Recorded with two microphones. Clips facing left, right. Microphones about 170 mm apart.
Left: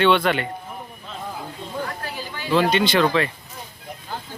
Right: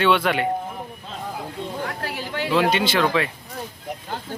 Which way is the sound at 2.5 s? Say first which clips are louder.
Left 2 dB; 5° right (ahead or behind).